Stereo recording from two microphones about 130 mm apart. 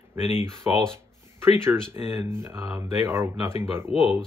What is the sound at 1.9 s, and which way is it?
Speech, 20° right (ahead or behind).